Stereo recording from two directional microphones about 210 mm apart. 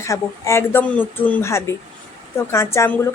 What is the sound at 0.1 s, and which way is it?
Speech, 15° left (ahead or behind).